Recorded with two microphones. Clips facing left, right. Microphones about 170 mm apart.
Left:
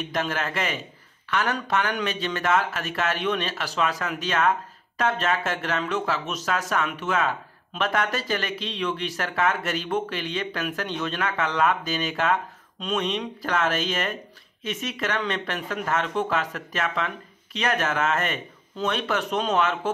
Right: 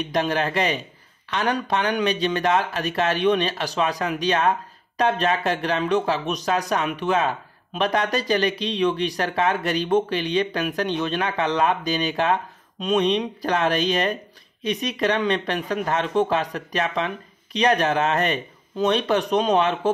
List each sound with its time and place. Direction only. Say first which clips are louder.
0.1 s speech: right 6 dB; 20° right (ahead or behind)